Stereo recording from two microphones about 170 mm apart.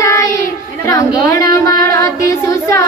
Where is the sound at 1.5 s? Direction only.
20° left (ahead or behind).